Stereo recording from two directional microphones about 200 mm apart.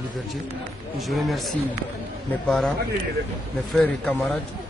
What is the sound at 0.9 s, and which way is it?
Speech, centre (ahead or behind).